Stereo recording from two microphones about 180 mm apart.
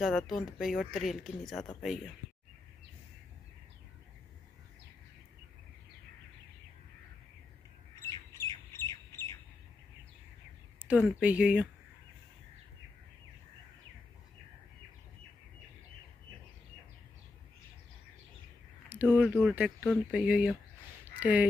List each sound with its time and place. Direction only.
0.0 s speech: centre (ahead or behind)
8.0 s bird: 15° left (ahead or behind)
10.9 s speech: 10° right (ahead or behind)
18.9 s a sound: 10° right (ahead or behind)
19.5 s speech: 5° right (ahead or behind)
21.0 s a sound: 10° right (ahead or behind)